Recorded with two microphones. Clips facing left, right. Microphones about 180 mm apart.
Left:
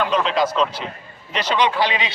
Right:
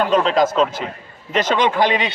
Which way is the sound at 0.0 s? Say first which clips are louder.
Right 4 dB; 40° right (ahead or behind).